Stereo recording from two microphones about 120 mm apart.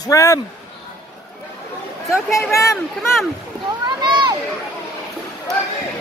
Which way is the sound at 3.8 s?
40° right (ahead or behind).